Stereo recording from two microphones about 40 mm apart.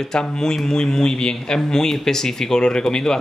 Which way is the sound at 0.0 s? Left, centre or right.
Centre.